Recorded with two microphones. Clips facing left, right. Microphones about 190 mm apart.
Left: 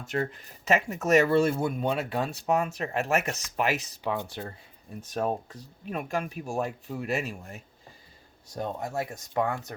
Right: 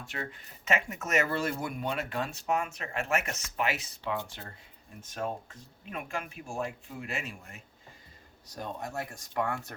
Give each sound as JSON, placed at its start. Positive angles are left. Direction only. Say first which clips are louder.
{"t": 0.0, "sound": "speech", "louder": "left 9 dB", "side_deg": 45}
{"t": 8.4, "sound": "speech", "louder": "left 5 dB", "side_deg": 25}